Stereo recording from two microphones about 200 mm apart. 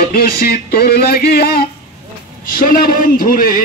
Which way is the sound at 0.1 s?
50° left (ahead or behind).